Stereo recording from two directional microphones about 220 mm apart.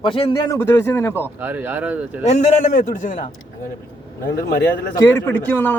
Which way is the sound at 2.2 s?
30° left (ahead or behind).